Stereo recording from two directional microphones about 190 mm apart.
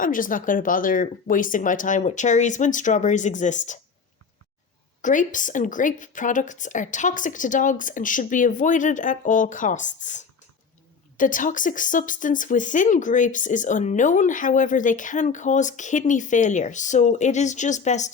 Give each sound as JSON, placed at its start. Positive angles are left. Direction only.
{"t": 0.0, "sound": "a woman's voice", "side_deg": 45}
{"t": 5.0, "sound": "a woman's voice", "side_deg": 45}